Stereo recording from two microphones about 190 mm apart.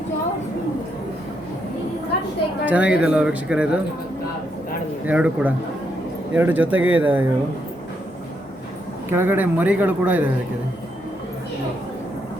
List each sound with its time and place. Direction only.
2.6 s speech: 5° right (ahead or behind)
5.0 s a man's voice: 5° right (ahead or behind)
9.0 s a man's voice: 10° right (ahead or behind)